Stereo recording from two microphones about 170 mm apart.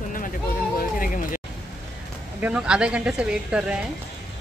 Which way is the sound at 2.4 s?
5° right (ahead or behind).